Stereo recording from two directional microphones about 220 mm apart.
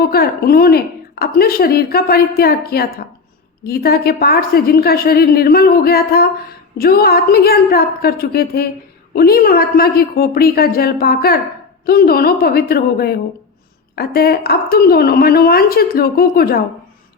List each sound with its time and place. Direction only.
0.0 s a woman's voice: 45° left (ahead or behind)